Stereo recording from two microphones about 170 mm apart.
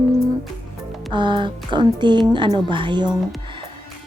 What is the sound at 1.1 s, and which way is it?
A woman's voice, 25° right (ahead or behind).